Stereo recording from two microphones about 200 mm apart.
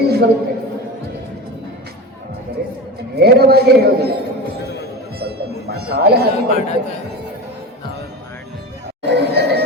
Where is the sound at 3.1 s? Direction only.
50° right (ahead or behind).